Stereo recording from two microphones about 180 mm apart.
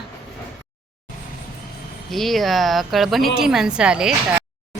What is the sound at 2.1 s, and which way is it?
A woman's voice, centre (ahead or behind).